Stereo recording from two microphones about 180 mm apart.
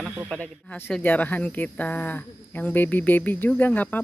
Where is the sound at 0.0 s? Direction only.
Centre (ahead or behind).